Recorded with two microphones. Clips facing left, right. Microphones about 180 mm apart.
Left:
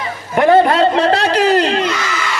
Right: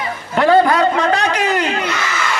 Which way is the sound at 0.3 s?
20° left (ahead or behind).